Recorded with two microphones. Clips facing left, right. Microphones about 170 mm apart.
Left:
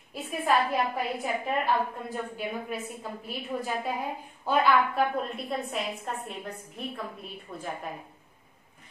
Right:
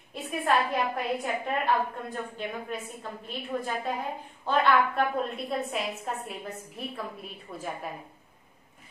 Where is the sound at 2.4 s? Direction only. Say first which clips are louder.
Left 1 dB; 5° left (ahead or behind).